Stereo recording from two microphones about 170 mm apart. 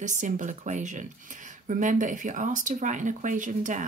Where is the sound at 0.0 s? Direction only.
45° right (ahead or behind).